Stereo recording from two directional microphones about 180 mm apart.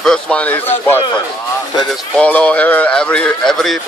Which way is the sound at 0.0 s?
5° left (ahead or behind).